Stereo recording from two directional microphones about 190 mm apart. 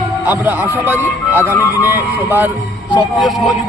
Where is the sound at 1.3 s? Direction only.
10° right (ahead or behind).